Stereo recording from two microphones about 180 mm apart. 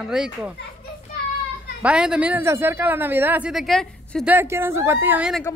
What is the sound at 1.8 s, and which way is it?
A man's voice, 5° right (ahead or behind).